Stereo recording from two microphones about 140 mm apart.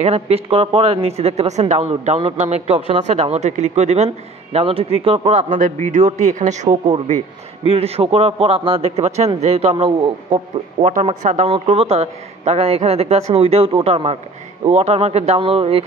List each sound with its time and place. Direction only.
0.0 s speech: 45° right (ahead or behind)
5.6 s a man's voice: 65° right (ahead or behind)
7.6 s speech: 45° right (ahead or behind)
10.8 s a man's voice: 60° right (ahead or behind)
11.4 s speech: 45° right (ahead or behind)